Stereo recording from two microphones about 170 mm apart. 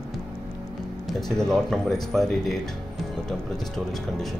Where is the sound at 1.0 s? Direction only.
Centre (ahead or behind).